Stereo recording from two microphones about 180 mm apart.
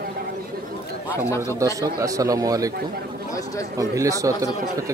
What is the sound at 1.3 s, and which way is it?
Speech, 15° left (ahead or behind).